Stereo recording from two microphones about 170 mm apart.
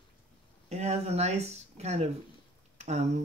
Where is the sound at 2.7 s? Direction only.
45° right (ahead or behind).